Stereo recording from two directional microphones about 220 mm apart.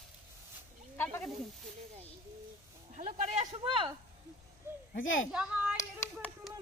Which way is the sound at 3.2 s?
35° right (ahead or behind).